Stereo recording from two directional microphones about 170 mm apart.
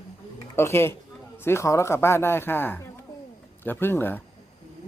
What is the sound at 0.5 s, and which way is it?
Speech, 15° left (ahead or behind).